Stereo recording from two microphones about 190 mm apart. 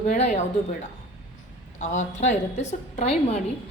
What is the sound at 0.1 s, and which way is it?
Speech, 40° left (ahead or behind).